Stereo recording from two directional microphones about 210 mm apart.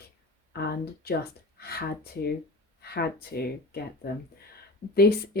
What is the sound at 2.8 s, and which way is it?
Speech, 50° left (ahead or behind).